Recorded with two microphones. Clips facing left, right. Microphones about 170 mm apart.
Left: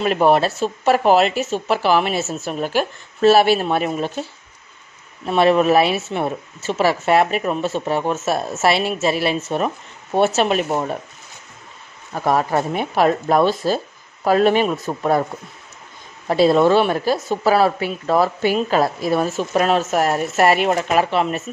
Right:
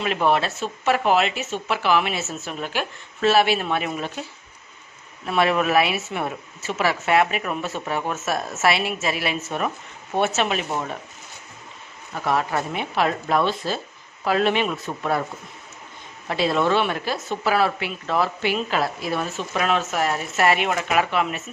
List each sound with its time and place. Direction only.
0.0 s speech: 40° left (ahead or behind)
5.2 s speech: 30° left (ahead or behind)
12.1 s speech: 40° left (ahead or behind)
16.3 s speech: 40° left (ahead or behind)